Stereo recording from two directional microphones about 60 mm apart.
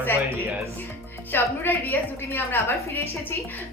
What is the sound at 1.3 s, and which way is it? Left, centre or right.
A woman's voice, left.